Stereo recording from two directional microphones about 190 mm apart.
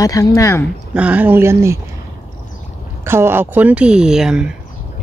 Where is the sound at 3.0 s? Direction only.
15° right (ahead or behind).